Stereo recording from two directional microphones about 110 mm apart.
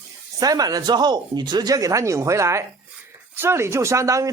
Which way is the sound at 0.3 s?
35° right (ahead or behind).